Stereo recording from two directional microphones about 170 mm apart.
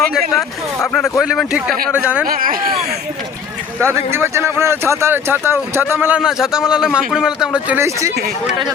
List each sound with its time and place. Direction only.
0.3 s speech: centre (ahead or behind)
2.2 s speech: 55° right (ahead or behind)
3.8 s speech: 15° right (ahead or behind)